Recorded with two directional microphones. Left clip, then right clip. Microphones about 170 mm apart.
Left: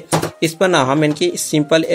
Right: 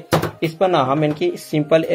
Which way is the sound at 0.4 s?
35° left (ahead or behind).